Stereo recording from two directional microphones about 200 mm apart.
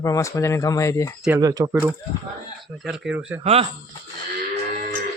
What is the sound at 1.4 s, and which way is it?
Speech, 20° right (ahead or behind).